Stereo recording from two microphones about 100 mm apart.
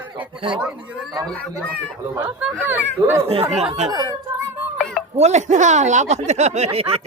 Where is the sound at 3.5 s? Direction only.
90° right.